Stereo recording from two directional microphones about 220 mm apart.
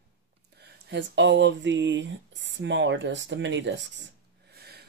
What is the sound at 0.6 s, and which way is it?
Speech, 50° right (ahead or behind).